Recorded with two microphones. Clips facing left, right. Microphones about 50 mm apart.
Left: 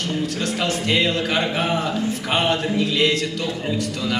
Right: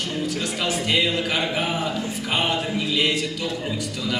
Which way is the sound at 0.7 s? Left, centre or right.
Centre.